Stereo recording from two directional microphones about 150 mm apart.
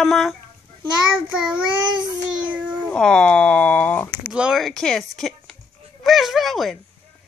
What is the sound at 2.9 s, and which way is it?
Speech, 5° left (ahead or behind).